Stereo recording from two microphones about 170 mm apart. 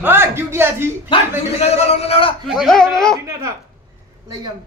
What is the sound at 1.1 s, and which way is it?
A man's voice, 30° left (ahead or behind).